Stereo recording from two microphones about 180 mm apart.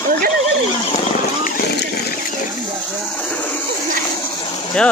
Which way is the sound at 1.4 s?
60° left (ahead or behind).